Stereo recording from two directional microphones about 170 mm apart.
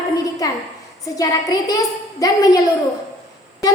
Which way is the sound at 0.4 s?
20° left (ahead or behind).